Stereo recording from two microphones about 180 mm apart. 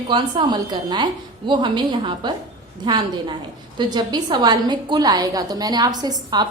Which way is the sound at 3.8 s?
25° right (ahead or behind).